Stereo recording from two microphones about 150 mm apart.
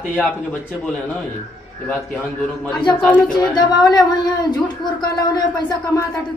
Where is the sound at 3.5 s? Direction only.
25° left (ahead or behind).